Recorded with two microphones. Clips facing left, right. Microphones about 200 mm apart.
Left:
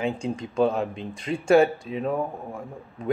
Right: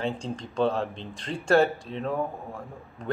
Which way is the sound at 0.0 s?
10° left (ahead or behind).